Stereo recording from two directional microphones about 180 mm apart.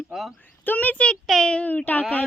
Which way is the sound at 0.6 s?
10° left (ahead or behind).